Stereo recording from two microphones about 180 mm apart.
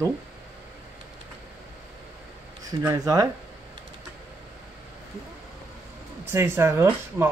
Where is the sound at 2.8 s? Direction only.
15° right (ahead or behind).